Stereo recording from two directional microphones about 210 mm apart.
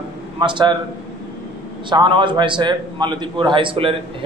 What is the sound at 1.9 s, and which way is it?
A man's voice, 25° right (ahead or behind).